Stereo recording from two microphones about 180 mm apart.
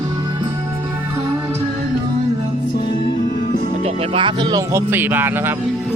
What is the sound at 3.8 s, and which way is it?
Speech, 30° right (ahead or behind).